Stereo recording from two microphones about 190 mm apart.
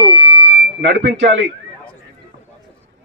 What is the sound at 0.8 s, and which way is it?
Speech, 65° right (ahead or behind).